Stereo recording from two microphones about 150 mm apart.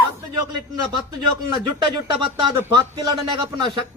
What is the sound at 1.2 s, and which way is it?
A man's voice, 30° right (ahead or behind).